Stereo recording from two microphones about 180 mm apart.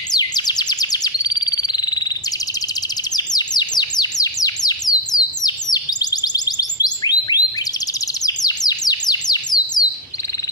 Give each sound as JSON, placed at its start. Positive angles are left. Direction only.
{"t": 0.1, "sound": "bird", "side_deg": 20}